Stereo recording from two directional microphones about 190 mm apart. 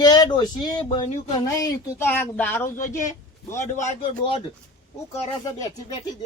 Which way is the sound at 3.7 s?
35° left (ahead or behind).